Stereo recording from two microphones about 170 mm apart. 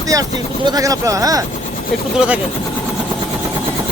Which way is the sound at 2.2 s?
10° right (ahead or behind).